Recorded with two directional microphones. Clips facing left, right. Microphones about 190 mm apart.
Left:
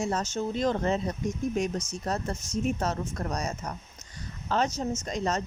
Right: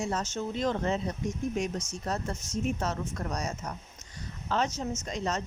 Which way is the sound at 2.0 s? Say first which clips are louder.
Left 1 dB; 40° left (ahead or behind).